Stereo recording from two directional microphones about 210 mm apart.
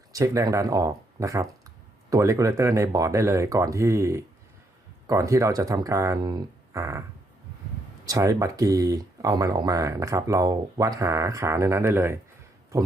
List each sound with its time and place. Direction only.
0.1 s speech: 15° right (ahead or behind)
8.0 s speech: 15° right (ahead or behind)